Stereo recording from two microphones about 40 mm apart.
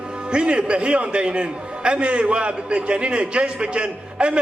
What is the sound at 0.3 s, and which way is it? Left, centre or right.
A man's voice, right.